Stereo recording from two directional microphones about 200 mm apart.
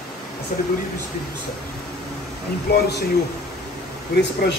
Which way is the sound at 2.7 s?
55° left (ahead or behind).